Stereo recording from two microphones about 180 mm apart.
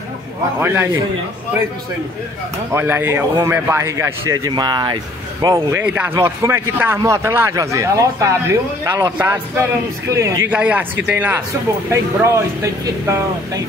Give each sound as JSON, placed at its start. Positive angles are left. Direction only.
{"t": 0.6, "sound": "speech", "side_deg": -10}
{"t": 2.7, "sound": "speech", "side_deg": -10}